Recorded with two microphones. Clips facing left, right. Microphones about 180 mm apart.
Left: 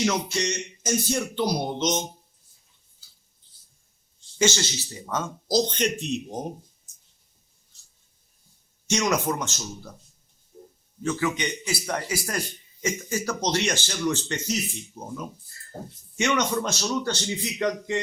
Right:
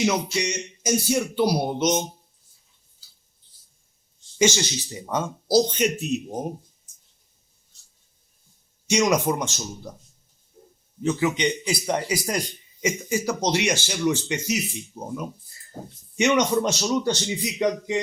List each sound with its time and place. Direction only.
0.3 s speech: 10° right (ahead or behind)
4.4 s speech: 15° right (ahead or behind)
8.9 s speech: 10° right (ahead or behind)
11.0 s speech: 20° right (ahead or behind)